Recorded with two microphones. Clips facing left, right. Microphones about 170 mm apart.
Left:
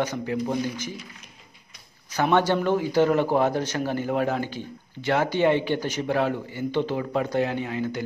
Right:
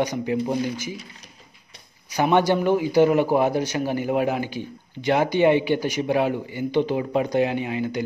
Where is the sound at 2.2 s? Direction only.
15° right (ahead or behind).